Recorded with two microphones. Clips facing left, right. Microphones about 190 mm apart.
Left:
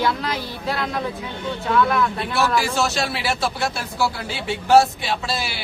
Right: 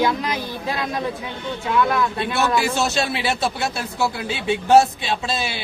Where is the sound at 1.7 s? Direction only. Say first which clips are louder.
Even; 20° right (ahead or behind).